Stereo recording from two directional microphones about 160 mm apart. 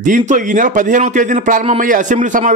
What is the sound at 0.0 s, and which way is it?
Speech, 50° right (ahead or behind).